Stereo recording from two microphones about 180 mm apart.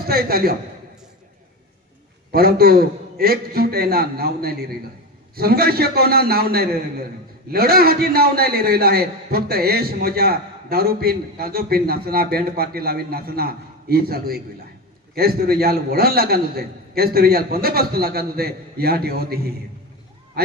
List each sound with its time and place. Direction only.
0.0 s a man's voice: 55° right (ahead or behind)
2.3 s a man's voice: 55° right (ahead or behind)